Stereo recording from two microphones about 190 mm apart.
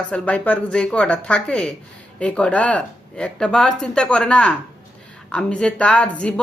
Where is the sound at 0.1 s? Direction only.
5° left (ahead or behind).